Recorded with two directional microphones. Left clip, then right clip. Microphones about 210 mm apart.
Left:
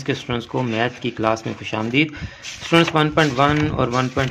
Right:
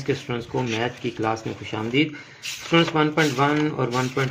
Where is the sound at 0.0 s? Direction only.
30° left (ahead or behind).